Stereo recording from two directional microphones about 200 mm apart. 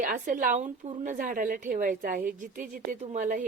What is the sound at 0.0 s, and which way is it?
Speech, 40° right (ahead or behind).